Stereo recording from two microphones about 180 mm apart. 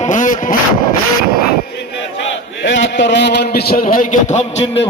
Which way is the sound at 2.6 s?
90° left.